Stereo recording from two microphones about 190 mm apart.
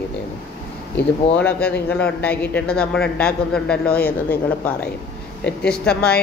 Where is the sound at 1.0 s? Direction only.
65° left (ahead or behind).